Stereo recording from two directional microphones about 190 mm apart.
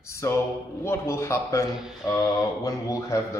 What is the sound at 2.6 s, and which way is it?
Speech, 15° left (ahead or behind).